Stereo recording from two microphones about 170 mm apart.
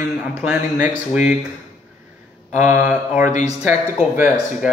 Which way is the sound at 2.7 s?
10° right (ahead or behind).